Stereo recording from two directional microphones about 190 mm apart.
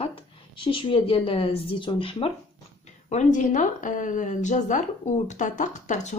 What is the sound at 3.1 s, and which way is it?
A woman's voice, 40° left (ahead or behind).